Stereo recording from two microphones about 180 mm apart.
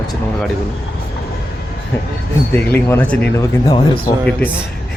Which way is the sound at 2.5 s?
10° left (ahead or behind).